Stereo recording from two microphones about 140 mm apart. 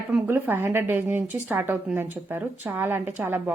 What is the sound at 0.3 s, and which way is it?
A woman's voice, 15° right (ahead or behind).